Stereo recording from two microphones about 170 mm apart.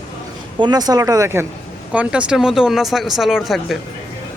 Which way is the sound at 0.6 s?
25° right (ahead or behind).